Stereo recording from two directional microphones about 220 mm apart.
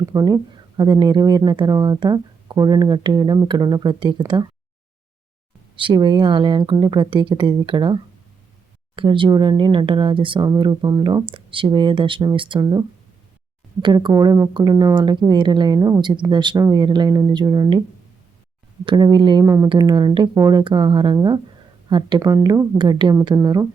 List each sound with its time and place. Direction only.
0.0 s speech: 15° right (ahead or behind)
5.7 s speech: 20° right (ahead or behind)
9.0 s speech: 20° right (ahead or behind)
13.8 s speech: 20° right (ahead or behind)
18.9 s speech: 20° right (ahead or behind)